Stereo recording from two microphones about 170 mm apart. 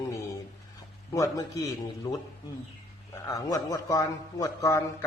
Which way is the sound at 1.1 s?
20° left (ahead or behind).